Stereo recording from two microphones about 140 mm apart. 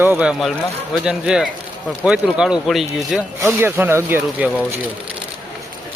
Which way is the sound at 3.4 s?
15° right (ahead or behind).